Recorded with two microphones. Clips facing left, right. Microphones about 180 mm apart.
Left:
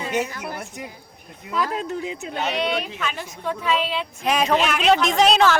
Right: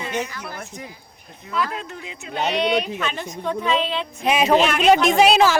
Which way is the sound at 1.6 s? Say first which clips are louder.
Left 5 dB; 40° left (ahead or behind).